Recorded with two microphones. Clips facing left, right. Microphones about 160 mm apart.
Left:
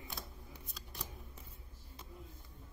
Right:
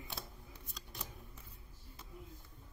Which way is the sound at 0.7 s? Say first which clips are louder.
Even; centre (ahead or behind).